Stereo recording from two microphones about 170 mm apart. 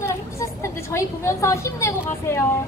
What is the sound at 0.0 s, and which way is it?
A woman's voice, 15° left (ahead or behind).